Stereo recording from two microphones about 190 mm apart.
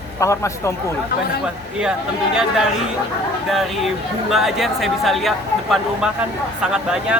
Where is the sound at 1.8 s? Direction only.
5° right (ahead or behind).